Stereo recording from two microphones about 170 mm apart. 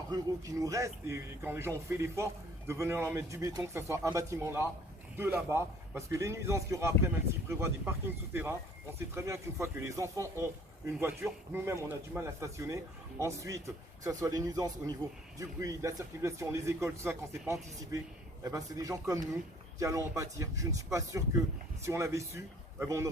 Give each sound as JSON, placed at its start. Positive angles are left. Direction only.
{"t": 0.1, "sound": "speech", "side_deg": -20}